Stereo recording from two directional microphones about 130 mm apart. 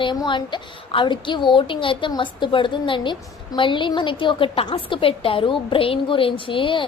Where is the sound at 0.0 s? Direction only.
40° left (ahead or behind).